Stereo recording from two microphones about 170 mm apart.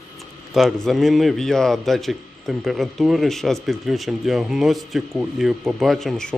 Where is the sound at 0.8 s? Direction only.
Centre (ahead or behind).